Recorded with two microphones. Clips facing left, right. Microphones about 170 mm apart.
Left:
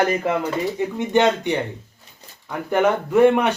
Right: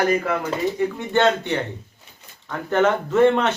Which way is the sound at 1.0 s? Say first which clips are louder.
Left 3 dB; 15° left (ahead or behind).